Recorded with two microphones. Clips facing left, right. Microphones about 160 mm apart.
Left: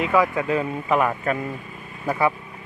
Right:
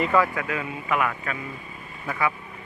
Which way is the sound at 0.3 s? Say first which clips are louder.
Left 6 dB; 30° left (ahead or behind).